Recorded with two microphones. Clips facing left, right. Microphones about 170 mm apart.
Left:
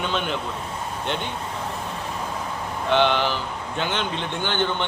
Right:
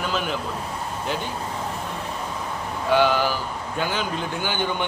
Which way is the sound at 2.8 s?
5° right (ahead or behind).